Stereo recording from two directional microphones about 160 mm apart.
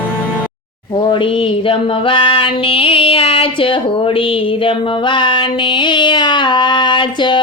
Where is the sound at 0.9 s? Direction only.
35° left (ahead or behind).